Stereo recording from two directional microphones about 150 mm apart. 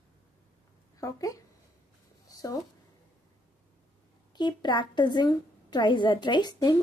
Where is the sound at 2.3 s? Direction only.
25° left (ahead or behind).